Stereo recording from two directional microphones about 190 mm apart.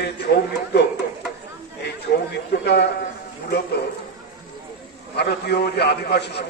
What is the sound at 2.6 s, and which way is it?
A man's voice, 60° left (ahead or behind).